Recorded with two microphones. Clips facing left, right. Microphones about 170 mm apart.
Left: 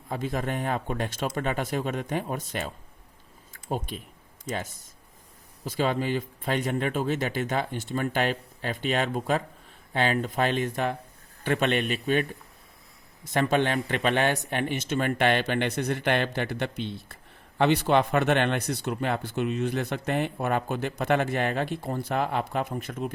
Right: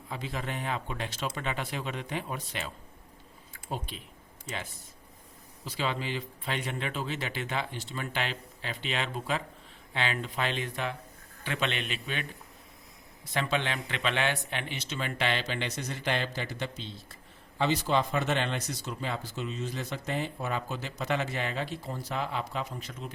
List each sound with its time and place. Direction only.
0.1 s speech: 50° left (ahead or behind)
5.6 s speech: 45° left (ahead or behind)
13.3 s speech: 50° left (ahead or behind)